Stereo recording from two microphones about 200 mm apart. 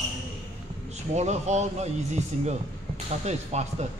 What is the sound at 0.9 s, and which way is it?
Speech, 35° right (ahead or behind).